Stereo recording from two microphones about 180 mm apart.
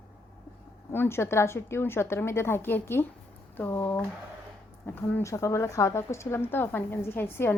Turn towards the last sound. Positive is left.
turn(degrees=15)  # may be behind; listen again after turning